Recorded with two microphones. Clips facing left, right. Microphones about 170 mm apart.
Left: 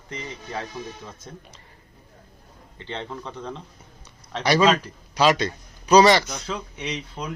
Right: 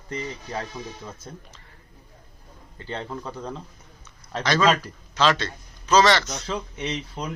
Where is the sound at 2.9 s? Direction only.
5° right (ahead or behind).